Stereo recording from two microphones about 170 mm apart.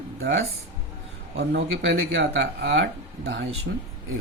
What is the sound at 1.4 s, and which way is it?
Speech, 90° right.